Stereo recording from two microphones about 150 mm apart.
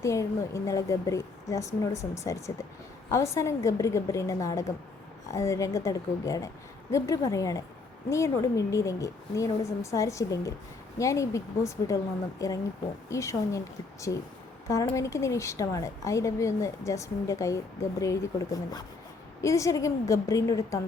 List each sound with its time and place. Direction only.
0.0 s a woman's voice: 20° left (ahead or behind)